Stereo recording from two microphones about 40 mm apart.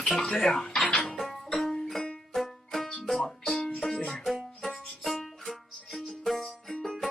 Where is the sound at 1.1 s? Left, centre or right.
Centre.